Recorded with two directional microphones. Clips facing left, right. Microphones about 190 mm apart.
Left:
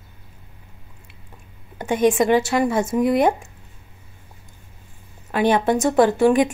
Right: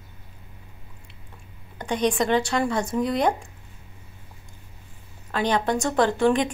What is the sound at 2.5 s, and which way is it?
Speech, 20° left (ahead or behind).